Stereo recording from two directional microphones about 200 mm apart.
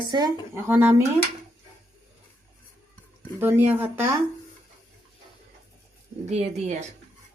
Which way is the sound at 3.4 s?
10° right (ahead or behind).